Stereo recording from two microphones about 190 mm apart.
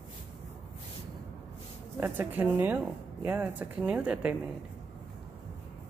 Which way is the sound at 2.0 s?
10° right (ahead or behind).